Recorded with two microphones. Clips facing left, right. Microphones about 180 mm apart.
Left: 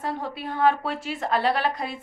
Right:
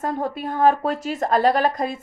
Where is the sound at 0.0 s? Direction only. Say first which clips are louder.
Right 5 dB; 45° right (ahead or behind).